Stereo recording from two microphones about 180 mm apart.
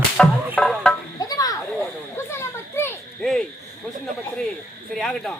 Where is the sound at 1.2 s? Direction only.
20° left (ahead or behind).